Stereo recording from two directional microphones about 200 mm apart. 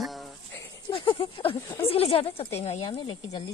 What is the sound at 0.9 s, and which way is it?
Speech, 25° left (ahead or behind).